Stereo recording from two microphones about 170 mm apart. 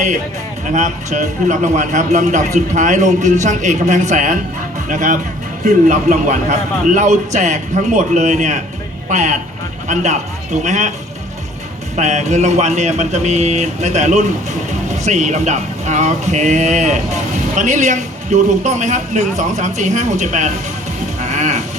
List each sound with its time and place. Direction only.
0.7 s speech: 45° right (ahead or behind)
11.9 s speech: 45° right (ahead or behind)
21.2 s sheep: 45° right (ahead or behind)